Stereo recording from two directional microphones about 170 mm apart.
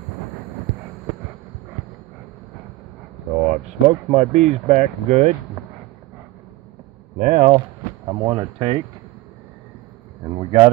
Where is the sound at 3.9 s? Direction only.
40° right (ahead or behind).